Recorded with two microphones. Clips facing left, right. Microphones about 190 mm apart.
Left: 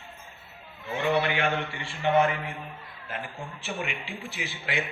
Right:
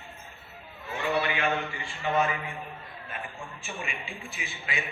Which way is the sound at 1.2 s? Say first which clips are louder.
Left 1 dB; 70° left (ahead or behind).